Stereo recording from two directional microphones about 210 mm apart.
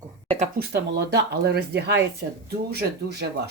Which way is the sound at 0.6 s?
50° right (ahead or behind).